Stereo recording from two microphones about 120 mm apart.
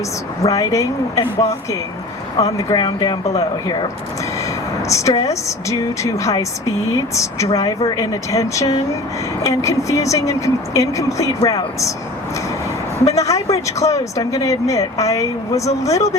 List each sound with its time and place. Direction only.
0.4 s speech: 25° left (ahead or behind)
2.4 s speech: 30° left (ahead or behind)
2.7 s speech: 40° left (ahead or behind)
4.9 s speech: 25° left (ahead or behind)
13.1 s speech: 25° left (ahead or behind)